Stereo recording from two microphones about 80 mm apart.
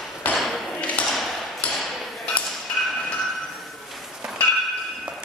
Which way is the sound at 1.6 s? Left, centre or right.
Centre.